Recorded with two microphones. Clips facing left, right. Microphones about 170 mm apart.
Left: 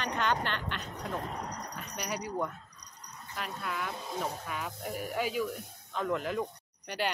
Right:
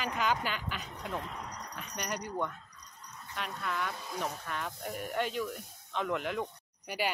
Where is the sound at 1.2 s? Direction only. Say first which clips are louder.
Left 4 dB; 40° left (ahead or behind).